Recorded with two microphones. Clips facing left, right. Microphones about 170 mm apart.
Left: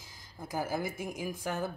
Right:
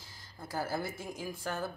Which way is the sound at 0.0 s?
15° left (ahead or behind).